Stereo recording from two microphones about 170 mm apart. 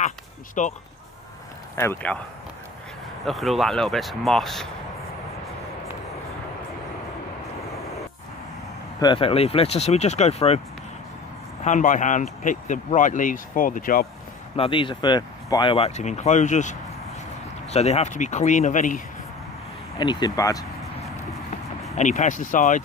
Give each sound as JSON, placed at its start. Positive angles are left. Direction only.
{"t": 0.6, "sound": "speech", "side_deg": 45}
{"t": 1.8, "sound": "speech", "side_deg": 15}
{"t": 3.3, "sound": "speech", "side_deg": 0}
{"t": 9.0, "sound": "speech", "side_deg": 30}
{"t": 11.6, "sound": "speech", "side_deg": 50}
{"t": 14.6, "sound": "speech", "side_deg": 30}
{"t": 20.0, "sound": "speech", "side_deg": 25}
{"t": 21.9, "sound": "speech", "side_deg": 45}